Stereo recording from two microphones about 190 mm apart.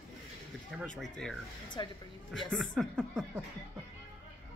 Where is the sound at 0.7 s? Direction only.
Centre (ahead or behind).